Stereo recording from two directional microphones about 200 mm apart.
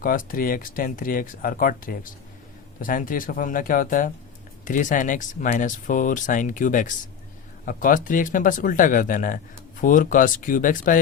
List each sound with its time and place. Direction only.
0.0 s speech: 45° left (ahead or behind)